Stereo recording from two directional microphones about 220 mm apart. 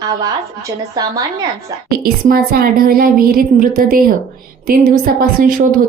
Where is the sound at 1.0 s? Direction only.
20° right (ahead or behind).